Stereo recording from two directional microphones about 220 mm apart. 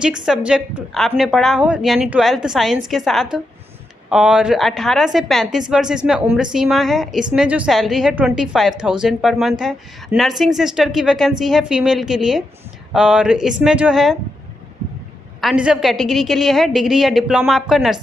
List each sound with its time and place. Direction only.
0.0 s a woman's voice: 5° right (ahead or behind)
15.4 s a woman's voice: 5° right (ahead or behind)